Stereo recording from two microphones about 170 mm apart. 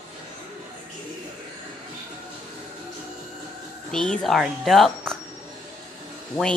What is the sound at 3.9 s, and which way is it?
Speech, 5° left (ahead or behind).